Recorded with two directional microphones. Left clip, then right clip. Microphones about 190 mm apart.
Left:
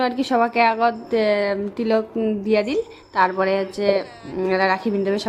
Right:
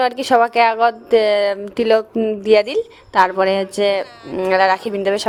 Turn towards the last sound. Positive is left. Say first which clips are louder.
# right 4 dB
turn(degrees=-45)  # may be behind; listen again after turning